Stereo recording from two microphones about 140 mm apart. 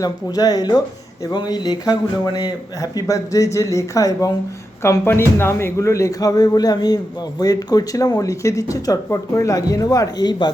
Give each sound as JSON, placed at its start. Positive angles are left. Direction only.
{"t": 0.0, "sound": "speech", "side_deg": 25}